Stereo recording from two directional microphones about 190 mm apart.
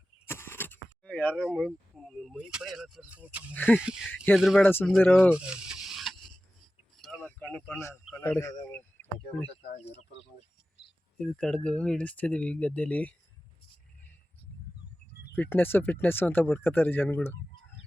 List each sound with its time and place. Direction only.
0.3 s keys jangling: 10° left (ahead or behind)
1.4 s speech: centre (ahead or behind)
3.5 s speech: 10° left (ahead or behind)
3.8 s speech: 5° right (ahead or behind)
4.6 s speech: 10° left (ahead or behind)
5.3 s a sound: 5° right (ahead or behind)
6.9 s vehicle: centre (ahead or behind)
7.7 s speech: 15° left (ahead or behind)
9.6 s speech: 35° left (ahead or behind)
11.3 s speech: 5° left (ahead or behind)
15.3 s speech: 10° left (ahead or behind)